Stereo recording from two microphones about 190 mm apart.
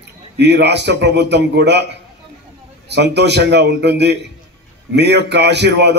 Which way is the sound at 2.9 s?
65° right (ahead or behind).